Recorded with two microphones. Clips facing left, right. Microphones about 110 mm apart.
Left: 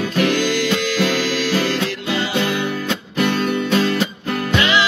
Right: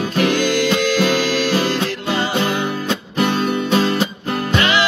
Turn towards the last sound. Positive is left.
turn(degrees=-30)  # may be behind; listen again after turning